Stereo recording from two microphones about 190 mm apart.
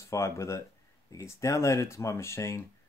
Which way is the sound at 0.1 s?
15° left (ahead or behind).